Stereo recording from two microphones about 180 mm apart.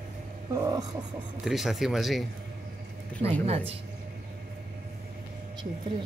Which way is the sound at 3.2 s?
35° right (ahead or behind).